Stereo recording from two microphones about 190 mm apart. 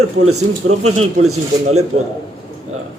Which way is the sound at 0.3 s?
35° right (ahead or behind).